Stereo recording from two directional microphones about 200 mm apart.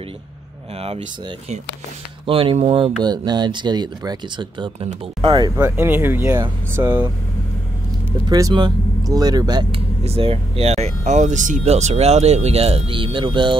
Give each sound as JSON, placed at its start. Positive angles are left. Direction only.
{"t": 2.2, "sound": "speech", "side_deg": -25}
{"t": 5.6, "sound": "speech", "side_deg": -10}
{"t": 8.3, "sound": "speech", "side_deg": -20}